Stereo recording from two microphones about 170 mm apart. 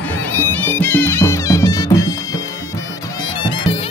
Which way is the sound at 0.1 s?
10° left (ahead or behind).